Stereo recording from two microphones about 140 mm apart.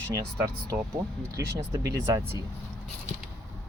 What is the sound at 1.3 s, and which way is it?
Speech, 20° right (ahead or behind).